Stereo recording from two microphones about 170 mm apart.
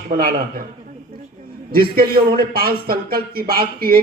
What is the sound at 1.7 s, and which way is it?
A man's voice, 60° right (ahead or behind).